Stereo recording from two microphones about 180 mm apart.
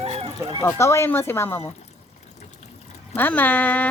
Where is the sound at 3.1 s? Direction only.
10° left (ahead or behind).